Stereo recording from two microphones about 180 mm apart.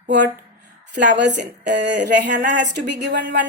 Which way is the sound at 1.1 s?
75° right (ahead or behind).